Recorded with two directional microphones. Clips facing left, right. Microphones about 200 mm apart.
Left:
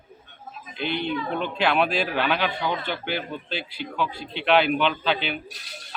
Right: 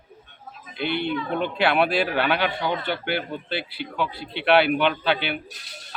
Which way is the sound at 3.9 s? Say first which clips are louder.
Even; 15° right (ahead or behind).